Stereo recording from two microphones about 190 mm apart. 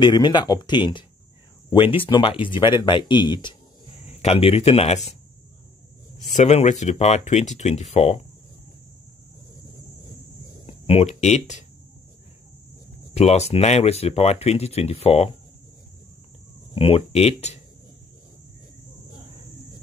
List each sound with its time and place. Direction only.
0.0 s speech: 20° left (ahead or behind)
4.0 s speech: 35° left (ahead or behind)
6.3 s speech: 35° left (ahead or behind)
10.7 s speech: 35° left (ahead or behind)
13.1 s speech: 35° left (ahead or behind)
16.7 s speech: 30° left (ahead or behind)